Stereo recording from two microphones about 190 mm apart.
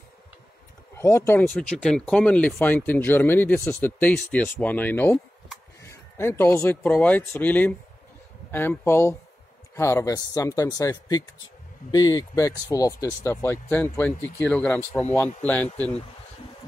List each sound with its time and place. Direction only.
0.9 s speech: 15° left (ahead or behind)